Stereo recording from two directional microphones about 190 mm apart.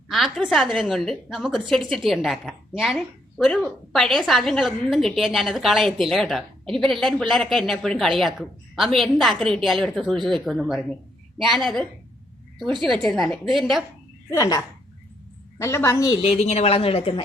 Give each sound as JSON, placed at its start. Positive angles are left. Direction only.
{"t": 0.1, "sound": "a woman's voice", "side_deg": 0}
{"t": 14.3, "sound": "a woman's voice", "side_deg": 20}
{"t": 16.2, "sound": "speech", "side_deg": 35}